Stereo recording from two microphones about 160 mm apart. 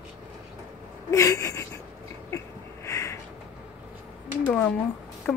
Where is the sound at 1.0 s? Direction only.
20° left (ahead or behind).